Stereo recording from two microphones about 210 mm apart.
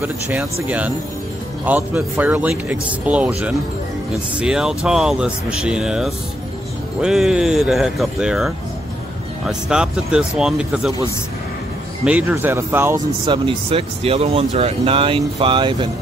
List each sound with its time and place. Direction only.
0.0 s speech: 10° right (ahead or behind)
2.0 s speech: 10° right (ahead or behind)
12.0 s speech: 5° right (ahead or behind)
13.7 s speech: 30° right (ahead or behind)